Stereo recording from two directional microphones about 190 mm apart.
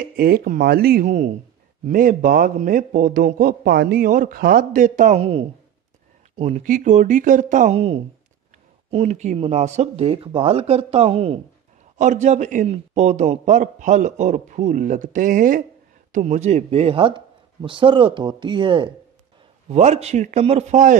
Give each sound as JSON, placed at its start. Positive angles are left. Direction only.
{"t": 0.1, "sound": "a man's voice", "side_deg": -50}
{"t": 1.0, "sound": "a man's voice", "side_deg": -40}
{"t": 19.7, "sound": "a man's voice", "side_deg": -35}